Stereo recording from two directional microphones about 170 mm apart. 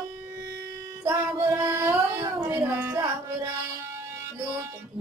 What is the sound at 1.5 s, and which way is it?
Carnatic music, 15° right (ahead or behind).